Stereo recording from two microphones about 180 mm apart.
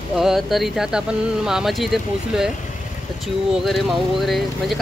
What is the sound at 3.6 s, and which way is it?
Speech, centre (ahead or behind).